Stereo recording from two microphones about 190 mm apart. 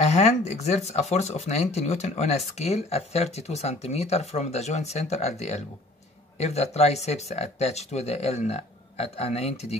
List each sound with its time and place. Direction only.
0.0 s speech: 35° left (ahead or behind)